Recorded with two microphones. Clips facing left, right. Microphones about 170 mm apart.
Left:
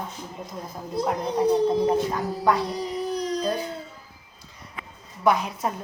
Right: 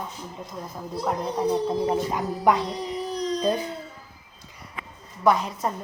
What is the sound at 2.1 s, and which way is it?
Speech, 20° right (ahead or behind).